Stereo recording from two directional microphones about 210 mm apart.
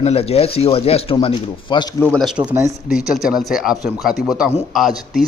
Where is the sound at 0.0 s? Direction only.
30° left (ahead or behind).